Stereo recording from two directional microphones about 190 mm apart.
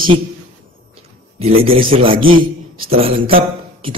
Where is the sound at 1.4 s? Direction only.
30° right (ahead or behind).